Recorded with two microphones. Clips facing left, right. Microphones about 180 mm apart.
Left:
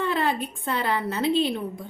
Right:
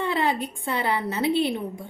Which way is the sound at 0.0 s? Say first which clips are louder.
Even; 15° right (ahead or behind).